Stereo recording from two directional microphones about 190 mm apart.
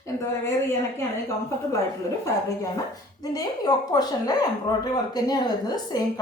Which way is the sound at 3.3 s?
20° left (ahead or behind).